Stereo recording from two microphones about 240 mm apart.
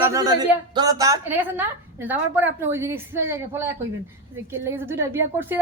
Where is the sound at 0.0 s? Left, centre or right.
Centre.